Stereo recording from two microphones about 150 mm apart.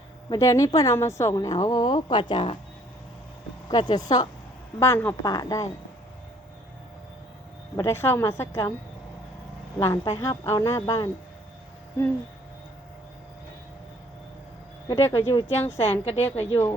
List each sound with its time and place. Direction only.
0.3 s speech: 20° left (ahead or behind)
3.7 s speech: 30° left (ahead or behind)
4.8 s speech: 15° left (ahead or behind)
7.8 s a woman's voice: 15° left (ahead or behind)
9.7 s speech: 20° left (ahead or behind)
14.8 s a woman's voice: 20° left (ahead or behind)
16.0 s a woman's voice: 45° left (ahead or behind)